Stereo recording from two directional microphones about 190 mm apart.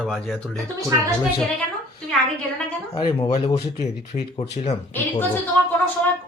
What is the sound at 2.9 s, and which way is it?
Speech, 25° left (ahead or behind).